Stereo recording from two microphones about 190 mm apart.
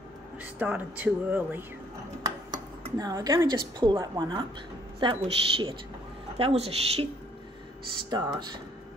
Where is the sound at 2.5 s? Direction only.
20° right (ahead or behind).